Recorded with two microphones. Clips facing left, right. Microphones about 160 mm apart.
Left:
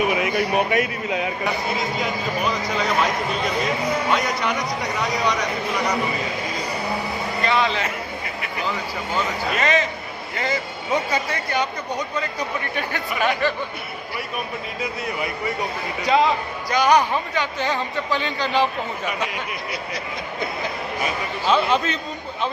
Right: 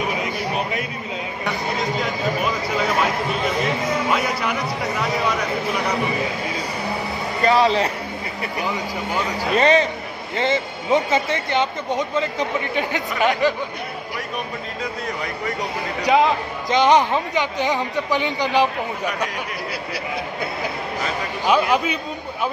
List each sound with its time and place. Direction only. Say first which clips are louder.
0.2 s a sound: left 4 dB; 70° left (ahead or behind)
1.4 s speech: even; centre (ahead or behind)
4.1 s a man's voice: even; 5° right (ahead or behind)
7.4 s a man's voice: right 6 dB; 40° right (ahead or behind)
8.5 s a man's voice: right 1 dB; 15° right (ahead or behind)
9.6 s a man's voice: right 7 dB; 30° right (ahead or behind)
16.1 s a man's voice: right 2 dB; 20° right (ahead or behind)
21.5 s a man's voice: right 1 dB; 10° right (ahead or behind)